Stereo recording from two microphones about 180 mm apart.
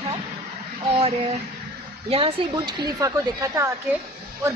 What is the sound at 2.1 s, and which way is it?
Speech, 30° right (ahead or behind).